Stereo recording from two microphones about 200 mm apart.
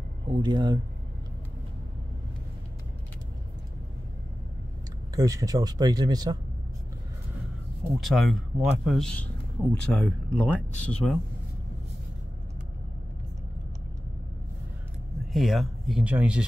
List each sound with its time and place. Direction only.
0.4 s speech: 20° right (ahead or behind)
5.1 s speech: 15° right (ahead or behind)
8.0 s speech: centre (ahead or behind)
15.3 s speech: centre (ahead or behind)